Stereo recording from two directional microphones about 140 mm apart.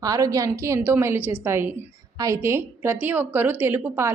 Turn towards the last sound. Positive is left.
turn(degrees=-15)  # may be behind; listen again after turning